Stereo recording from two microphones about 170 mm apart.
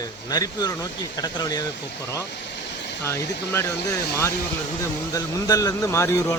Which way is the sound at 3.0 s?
15° left (ahead or behind).